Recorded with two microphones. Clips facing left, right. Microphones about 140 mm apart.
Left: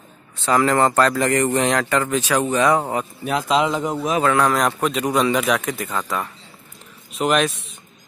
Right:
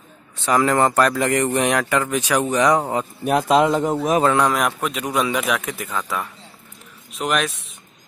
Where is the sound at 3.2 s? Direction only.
50° right (ahead or behind).